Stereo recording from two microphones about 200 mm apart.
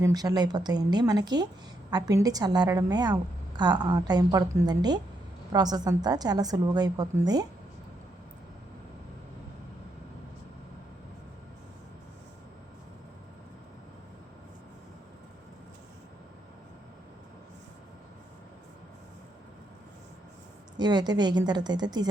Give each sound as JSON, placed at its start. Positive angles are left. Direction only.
{"t": 0.0, "sound": "a woman's voice", "side_deg": -20}
{"t": 20.7, "sound": "a woman's voice", "side_deg": -20}